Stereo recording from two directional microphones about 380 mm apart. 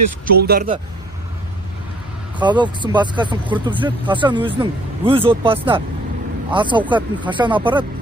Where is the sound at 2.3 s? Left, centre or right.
Centre.